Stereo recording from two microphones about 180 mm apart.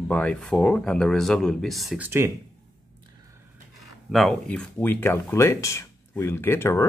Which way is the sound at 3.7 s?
Centre (ahead or behind).